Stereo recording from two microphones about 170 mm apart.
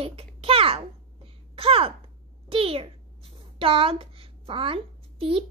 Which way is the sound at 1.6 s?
35° right (ahead or behind).